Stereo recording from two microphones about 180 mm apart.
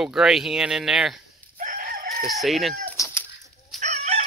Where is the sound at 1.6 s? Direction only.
50° right (ahead or behind).